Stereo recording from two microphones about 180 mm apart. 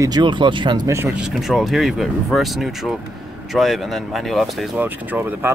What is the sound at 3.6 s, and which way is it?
Speech, centre (ahead or behind).